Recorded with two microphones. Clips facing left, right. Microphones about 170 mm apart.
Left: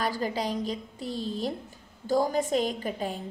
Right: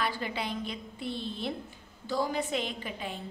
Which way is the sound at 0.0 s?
40° left (ahead or behind).